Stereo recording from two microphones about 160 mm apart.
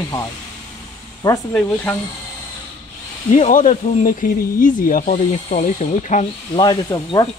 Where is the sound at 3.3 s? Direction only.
55° left (ahead or behind).